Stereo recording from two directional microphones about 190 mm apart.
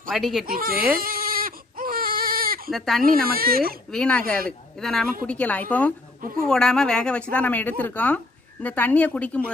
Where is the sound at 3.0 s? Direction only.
50° right (ahead or behind).